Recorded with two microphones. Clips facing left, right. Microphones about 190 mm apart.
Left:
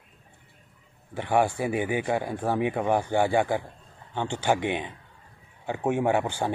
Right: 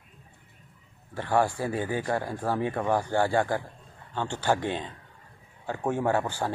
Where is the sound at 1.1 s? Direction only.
20° left (ahead or behind).